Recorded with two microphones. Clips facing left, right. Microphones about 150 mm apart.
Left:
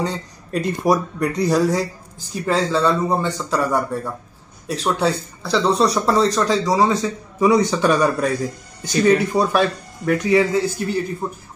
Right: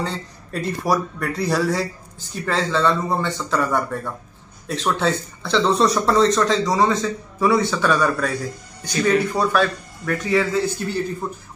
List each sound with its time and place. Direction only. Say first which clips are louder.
0.0 s speech: left 3 dB; 15° left (ahead or behind)